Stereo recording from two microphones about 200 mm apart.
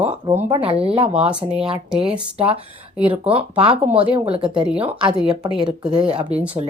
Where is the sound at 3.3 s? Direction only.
30° right (ahead or behind).